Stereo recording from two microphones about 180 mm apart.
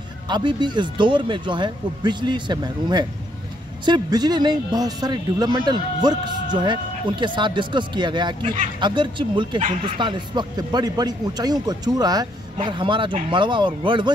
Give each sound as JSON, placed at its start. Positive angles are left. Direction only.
{"t": 0.3, "sound": "speech", "side_deg": -25}